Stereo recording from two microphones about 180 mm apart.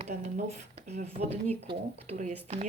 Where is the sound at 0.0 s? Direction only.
40° right (ahead or behind).